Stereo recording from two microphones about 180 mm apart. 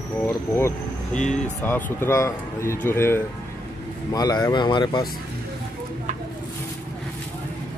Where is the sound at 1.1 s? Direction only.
45° left (ahead or behind).